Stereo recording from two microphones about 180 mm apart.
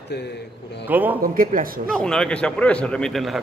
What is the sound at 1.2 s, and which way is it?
Speech, 50° right (ahead or behind).